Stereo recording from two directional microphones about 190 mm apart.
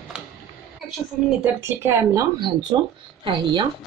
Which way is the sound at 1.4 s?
10° right (ahead or behind).